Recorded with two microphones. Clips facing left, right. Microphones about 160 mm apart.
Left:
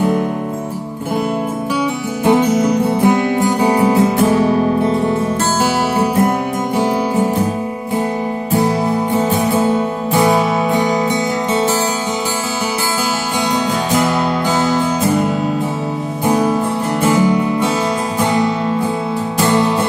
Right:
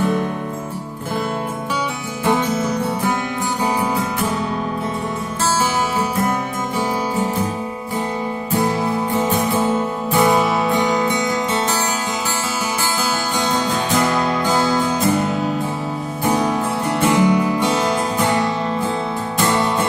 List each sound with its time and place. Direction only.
2.2 s music: 15° left (ahead or behind)
17.1 s music: centre (ahead or behind)